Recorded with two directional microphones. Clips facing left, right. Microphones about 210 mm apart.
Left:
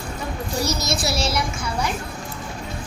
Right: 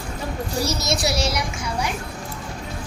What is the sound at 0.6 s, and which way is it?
Speech, 30° right (ahead or behind).